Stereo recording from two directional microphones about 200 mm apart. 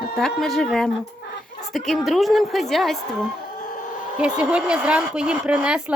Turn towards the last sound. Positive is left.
turn(degrees=-5)  # may be behind; listen again after turning